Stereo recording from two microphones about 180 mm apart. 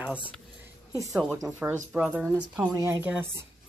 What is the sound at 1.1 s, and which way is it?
Speech, centre (ahead or behind).